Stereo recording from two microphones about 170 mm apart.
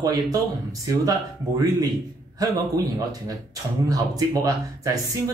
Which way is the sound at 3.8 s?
20° right (ahead or behind).